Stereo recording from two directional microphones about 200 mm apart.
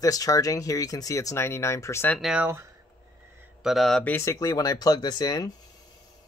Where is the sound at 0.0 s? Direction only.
15° left (ahead or behind).